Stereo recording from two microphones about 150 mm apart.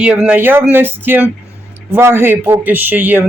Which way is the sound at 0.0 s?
10° right (ahead or behind).